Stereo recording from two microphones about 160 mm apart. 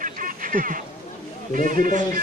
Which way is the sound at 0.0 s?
60° right (ahead or behind).